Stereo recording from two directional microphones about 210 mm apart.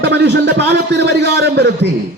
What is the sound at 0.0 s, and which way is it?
A man's voice, 55° right (ahead or behind).